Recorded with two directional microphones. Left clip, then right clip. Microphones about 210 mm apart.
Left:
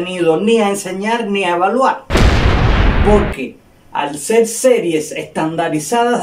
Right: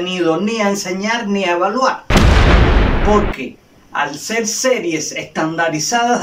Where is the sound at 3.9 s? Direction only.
15° left (ahead or behind).